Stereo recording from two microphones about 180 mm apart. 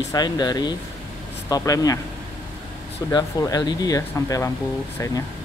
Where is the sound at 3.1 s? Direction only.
20° left (ahead or behind).